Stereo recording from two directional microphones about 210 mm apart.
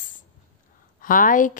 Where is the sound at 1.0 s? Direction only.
40° left (ahead or behind).